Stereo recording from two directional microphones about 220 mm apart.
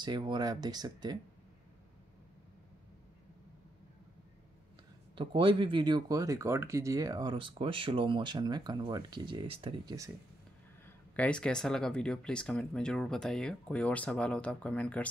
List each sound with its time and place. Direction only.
0.0 s speech: 20° right (ahead or behind)
5.1 s speech: 25° right (ahead or behind)
11.1 s speech: 5° left (ahead or behind)